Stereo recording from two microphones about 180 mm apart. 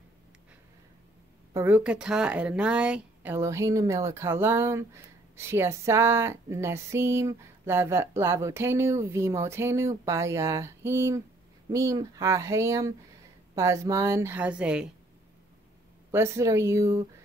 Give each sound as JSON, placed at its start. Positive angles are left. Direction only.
{"t": 1.5, "sound": "speech", "side_deg": -10}
{"t": 16.1, "sound": "speech", "side_deg": -15}